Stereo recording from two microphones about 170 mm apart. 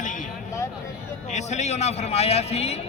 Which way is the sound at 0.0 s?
50° left (ahead or behind).